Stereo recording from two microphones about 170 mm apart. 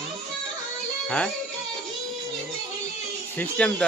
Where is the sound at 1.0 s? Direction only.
5° left (ahead or behind).